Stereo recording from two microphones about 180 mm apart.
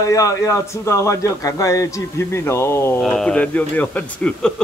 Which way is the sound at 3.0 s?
5° left (ahead or behind).